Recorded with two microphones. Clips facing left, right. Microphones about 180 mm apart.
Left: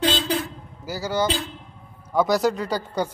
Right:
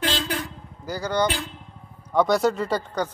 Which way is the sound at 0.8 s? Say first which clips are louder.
Even; 5° left (ahead or behind).